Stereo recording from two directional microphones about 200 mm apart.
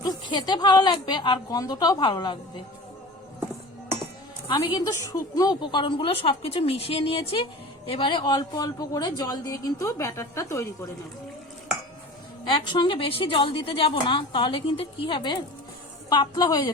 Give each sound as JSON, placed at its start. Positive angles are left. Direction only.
{"t": 0.0, "sound": "a woman's voice", "side_deg": 20}
{"t": 4.4, "sound": "a woman's voice", "side_deg": 20}
{"t": 12.5, "sound": "a woman's voice", "side_deg": 25}